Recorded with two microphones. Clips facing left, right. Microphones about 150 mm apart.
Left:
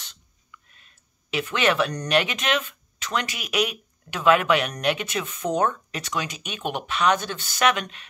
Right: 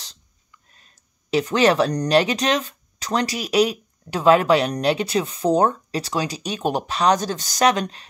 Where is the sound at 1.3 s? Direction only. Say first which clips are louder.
Right 6 dB; 35° right (ahead or behind).